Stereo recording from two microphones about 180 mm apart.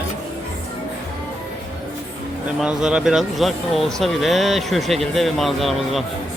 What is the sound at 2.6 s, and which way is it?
Speech, 5° right (ahead or behind).